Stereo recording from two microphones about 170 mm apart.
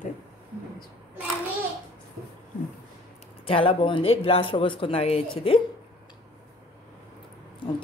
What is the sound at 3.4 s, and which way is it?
Speech, 30° left (ahead or behind).